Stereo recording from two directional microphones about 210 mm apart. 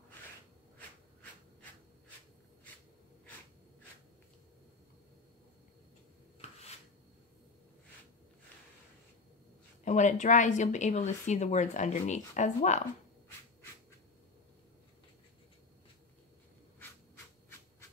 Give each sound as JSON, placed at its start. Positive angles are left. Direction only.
{"t": 9.8, "sound": "speech", "side_deg": 35}